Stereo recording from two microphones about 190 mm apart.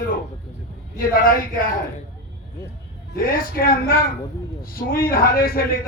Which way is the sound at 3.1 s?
50° left (ahead or behind).